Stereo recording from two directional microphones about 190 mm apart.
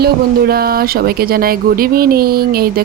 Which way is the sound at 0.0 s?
55° right (ahead or behind).